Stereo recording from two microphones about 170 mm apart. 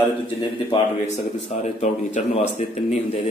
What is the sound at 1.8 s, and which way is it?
Speech, 45° left (ahead or behind).